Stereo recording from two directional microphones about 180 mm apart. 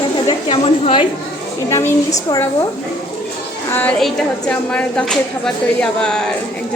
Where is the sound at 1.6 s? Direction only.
15° left (ahead or behind).